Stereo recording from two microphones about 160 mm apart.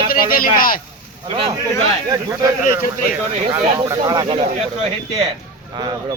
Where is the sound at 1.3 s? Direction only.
35° right (ahead or behind).